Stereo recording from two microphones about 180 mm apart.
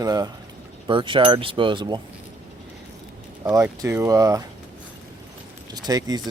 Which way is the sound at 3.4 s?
15° right (ahead or behind).